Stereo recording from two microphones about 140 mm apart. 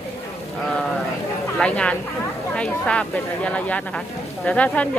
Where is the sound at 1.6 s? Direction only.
10° left (ahead or behind).